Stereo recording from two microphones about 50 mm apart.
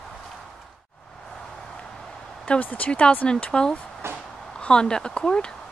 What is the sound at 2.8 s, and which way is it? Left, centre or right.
Speech, left.